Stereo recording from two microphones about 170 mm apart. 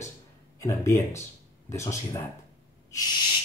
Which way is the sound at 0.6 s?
20° left (ahead or behind).